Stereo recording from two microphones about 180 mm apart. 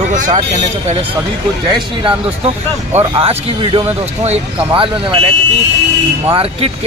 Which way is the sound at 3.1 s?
30° right (ahead or behind).